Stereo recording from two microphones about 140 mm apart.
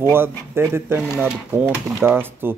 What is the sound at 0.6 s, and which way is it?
Speech, 20° right (ahead or behind).